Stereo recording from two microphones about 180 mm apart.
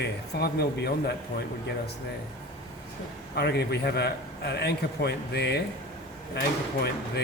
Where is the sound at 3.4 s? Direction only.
65° left (ahead or behind).